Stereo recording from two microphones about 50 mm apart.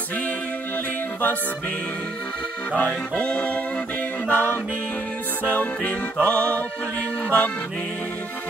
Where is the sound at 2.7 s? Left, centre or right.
Left.